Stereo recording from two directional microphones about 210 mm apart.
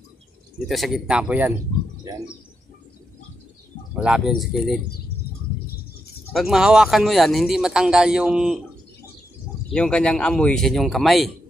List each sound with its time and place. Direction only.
0.7 s speech: centre (ahead or behind)
2.1 s speech: 20° right (ahead or behind)
3.9 s speech: 5° right (ahead or behind)
6.3 s speech: centre (ahead or behind)
9.7 s speech: 5° left (ahead or behind)